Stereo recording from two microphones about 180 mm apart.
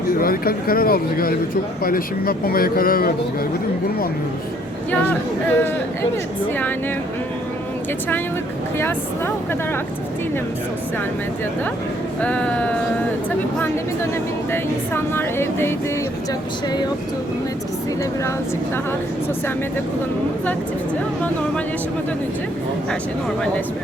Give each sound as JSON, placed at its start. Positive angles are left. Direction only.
{"t": 0.1, "sound": "speech", "side_deg": 55}
{"t": 4.9, "sound": "speech", "side_deg": 10}
{"t": 8.8, "sound": "speech", "side_deg": 10}
{"t": 12.2, "sound": "speech", "side_deg": 5}
{"t": 14.5, "sound": "speech", "side_deg": 15}